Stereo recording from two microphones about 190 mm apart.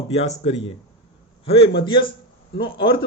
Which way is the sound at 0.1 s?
35° left (ahead or behind).